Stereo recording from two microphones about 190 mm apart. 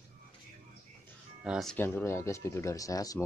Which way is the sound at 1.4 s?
Centre (ahead or behind).